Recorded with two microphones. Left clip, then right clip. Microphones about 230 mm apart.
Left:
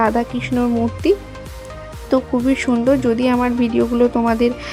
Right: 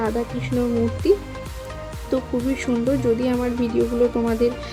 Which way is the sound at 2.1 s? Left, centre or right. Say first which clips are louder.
Left 6 dB; left.